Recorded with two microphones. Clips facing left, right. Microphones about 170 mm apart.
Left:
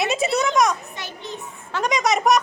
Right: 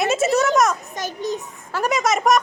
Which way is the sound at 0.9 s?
40° right (ahead or behind).